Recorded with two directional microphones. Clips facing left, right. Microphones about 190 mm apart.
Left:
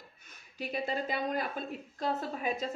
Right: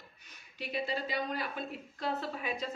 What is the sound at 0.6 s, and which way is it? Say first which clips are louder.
Speech: left 2 dB; 45° left (ahead or behind).